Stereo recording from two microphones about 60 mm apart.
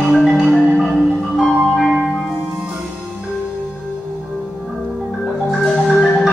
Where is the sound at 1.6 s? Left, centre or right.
Centre.